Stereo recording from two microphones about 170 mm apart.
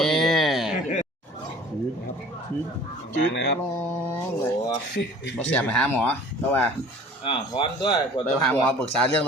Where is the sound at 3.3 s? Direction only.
75° left (ahead or behind).